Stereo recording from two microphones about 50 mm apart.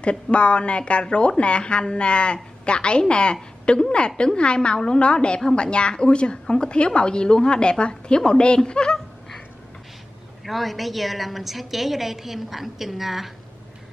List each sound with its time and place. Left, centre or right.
0.0 s a woman's voice: left
10.4 s a woman's voice: centre